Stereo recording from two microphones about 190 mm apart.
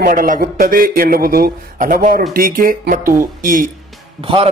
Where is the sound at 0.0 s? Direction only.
50° right (ahead or behind).